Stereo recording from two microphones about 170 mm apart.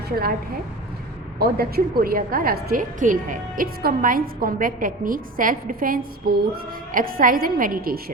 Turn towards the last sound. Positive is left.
turn(degrees=-60)  # may be behind; listen again after turning